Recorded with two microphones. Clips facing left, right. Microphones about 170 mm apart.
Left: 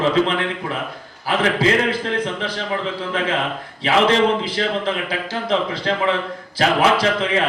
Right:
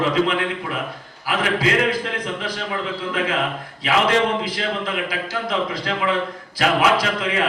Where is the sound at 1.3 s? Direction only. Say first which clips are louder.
Left 3 dB; 30° left (ahead or behind).